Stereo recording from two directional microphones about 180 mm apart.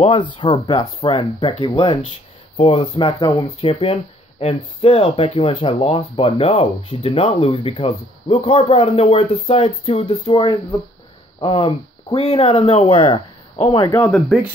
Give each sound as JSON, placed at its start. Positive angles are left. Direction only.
{"t": 0.0, "sound": "speech", "side_deg": 25}
{"t": 13.8, "sound": "speech", "side_deg": 15}